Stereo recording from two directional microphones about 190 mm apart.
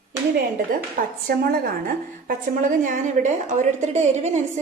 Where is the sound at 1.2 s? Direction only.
55° right (ahead or behind).